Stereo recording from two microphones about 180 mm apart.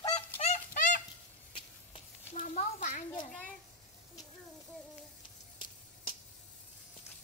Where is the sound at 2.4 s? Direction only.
45° left (ahead or behind).